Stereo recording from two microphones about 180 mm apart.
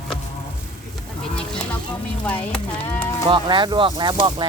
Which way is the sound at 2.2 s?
5° left (ahead or behind).